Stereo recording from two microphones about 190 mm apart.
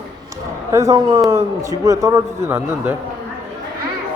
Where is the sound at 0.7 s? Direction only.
20° right (ahead or behind).